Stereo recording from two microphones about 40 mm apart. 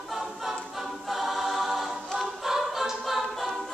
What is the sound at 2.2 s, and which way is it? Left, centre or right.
A capella, centre.